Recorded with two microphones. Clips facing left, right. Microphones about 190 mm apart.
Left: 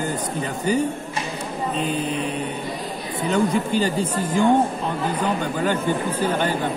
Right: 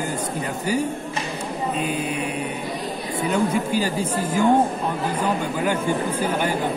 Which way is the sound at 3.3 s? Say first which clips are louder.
Left 2 dB; 10° right (ahead or behind).